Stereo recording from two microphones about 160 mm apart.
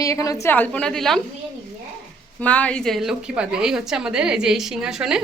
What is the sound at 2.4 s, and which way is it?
A woman's voice, 10° left (ahead or behind).